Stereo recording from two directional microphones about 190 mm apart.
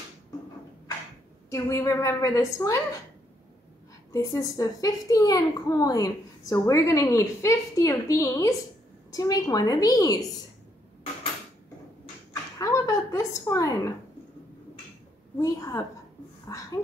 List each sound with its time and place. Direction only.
1.5 s a woman's voice: 15° left (ahead or behind)
4.1 s a woman's voice: 15° left (ahead or behind)
12.5 s a sound: 15° left (ahead or behind)
15.3 s a woman's voice: 15° left (ahead or behind)